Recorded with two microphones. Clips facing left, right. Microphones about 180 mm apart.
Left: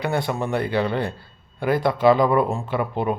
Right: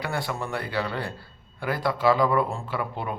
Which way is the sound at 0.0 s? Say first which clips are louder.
Left 6 dB; 20° left (ahead or behind).